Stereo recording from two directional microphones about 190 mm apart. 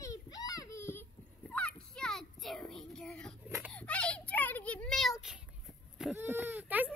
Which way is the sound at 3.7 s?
5° left (ahead or behind).